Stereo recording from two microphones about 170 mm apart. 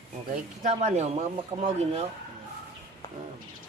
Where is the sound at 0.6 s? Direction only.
45° right (ahead or behind).